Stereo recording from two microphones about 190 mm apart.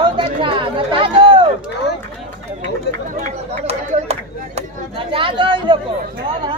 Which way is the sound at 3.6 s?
35° right (ahead or behind).